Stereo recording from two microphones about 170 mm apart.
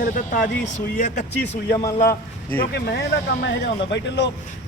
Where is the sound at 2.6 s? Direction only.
70° left (ahead or behind); by 4.3 s 90° left.